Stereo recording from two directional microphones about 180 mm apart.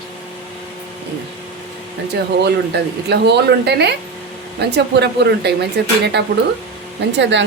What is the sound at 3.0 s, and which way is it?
Speech, 70° right (ahead or behind).